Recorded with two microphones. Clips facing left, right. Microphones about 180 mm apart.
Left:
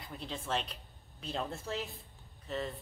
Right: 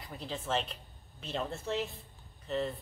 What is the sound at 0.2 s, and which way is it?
A woman's voice, centre (ahead or behind).